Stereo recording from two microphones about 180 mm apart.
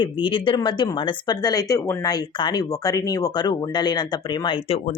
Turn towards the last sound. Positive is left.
turn(degrees=30)  # may be behind; listen again after turning